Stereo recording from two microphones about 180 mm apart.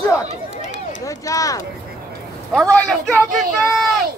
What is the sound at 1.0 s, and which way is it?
Speech, 20° left (ahead or behind).